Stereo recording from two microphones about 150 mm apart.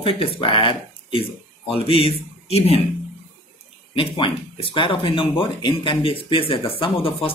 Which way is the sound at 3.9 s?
35° left (ahead or behind).